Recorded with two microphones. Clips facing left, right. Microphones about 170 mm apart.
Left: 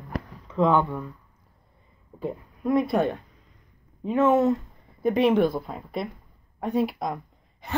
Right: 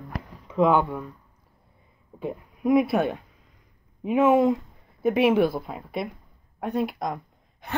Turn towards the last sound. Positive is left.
turn(degrees=0)  # may be behind; listen again after turning